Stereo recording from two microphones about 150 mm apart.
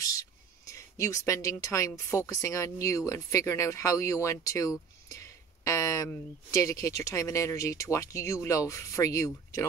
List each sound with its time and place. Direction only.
0.7 s speech: 20° left (ahead or behind)